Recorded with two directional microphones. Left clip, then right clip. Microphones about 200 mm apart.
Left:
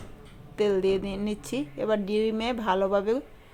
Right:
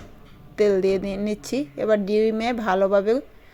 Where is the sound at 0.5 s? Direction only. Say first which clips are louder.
Right 5 dB; 20° right (ahead or behind).